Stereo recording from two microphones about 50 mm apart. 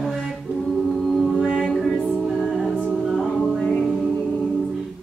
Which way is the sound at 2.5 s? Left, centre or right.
Centre.